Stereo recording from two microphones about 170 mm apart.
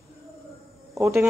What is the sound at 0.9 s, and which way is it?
Speech, 15° right (ahead or behind).